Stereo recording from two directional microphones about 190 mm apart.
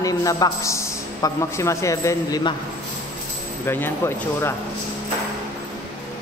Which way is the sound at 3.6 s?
10° left (ahead or behind).